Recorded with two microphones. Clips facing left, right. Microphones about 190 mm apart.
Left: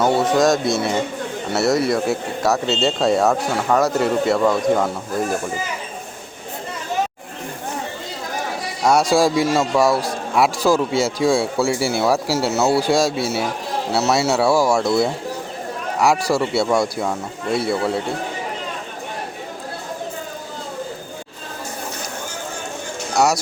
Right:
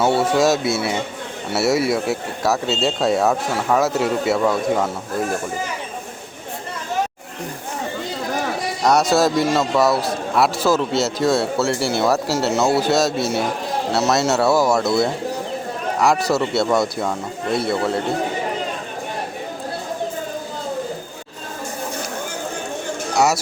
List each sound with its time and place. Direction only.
0.2 s speech: 5° right (ahead or behind)
8.8 s a man's voice: 10° left (ahead or behind)
23.1 s speech: centre (ahead or behind)